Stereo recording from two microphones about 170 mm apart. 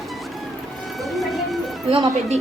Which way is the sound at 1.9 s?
35° right (ahead or behind).